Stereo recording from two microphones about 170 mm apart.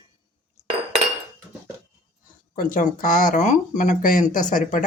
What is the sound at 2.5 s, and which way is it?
Speech, 55° left (ahead or behind).